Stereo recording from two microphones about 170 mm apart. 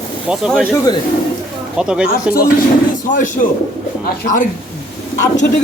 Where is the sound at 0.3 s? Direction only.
5° right (ahead or behind).